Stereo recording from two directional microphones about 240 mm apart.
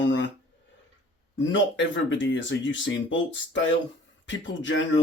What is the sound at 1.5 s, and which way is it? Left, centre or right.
Speech, left.